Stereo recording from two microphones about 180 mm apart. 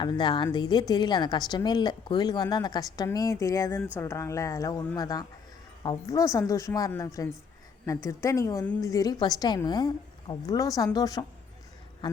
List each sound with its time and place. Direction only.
0.0 s a woman's voice: 25° left (ahead or behind)